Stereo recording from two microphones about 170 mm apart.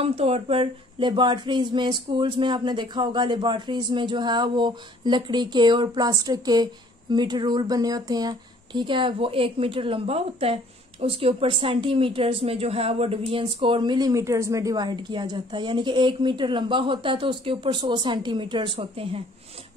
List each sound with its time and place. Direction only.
0.0 s speech: 35° right (ahead or behind)